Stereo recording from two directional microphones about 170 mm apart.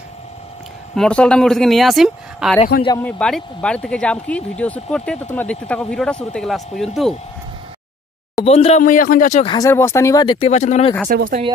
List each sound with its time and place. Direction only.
0.9 s speech: 5° left (ahead or behind)
8.5 s speech: 35° left (ahead or behind)
8.8 s speech: 55° left (ahead or behind)
9.6 s speech: 15° left (ahead or behind)
10.5 s speech: 45° left (ahead or behind)
11.1 s speech: 55° right (ahead or behind)